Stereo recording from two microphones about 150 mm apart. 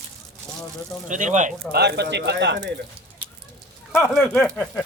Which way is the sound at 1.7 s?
90° right.